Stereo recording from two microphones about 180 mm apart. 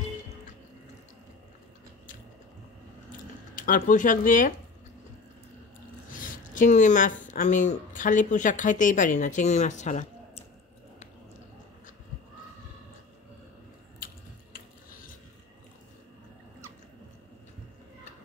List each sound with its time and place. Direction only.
3.1 s squish: 50° left (ahead or behind)
6.1 s speech: 45° left (ahead or behind)
13.9 s a sound: 50° left (ahead or behind)